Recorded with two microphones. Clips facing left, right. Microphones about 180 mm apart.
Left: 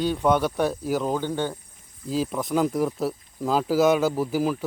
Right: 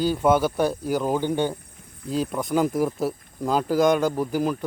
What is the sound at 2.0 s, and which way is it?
A man's voice, centre (ahead or behind).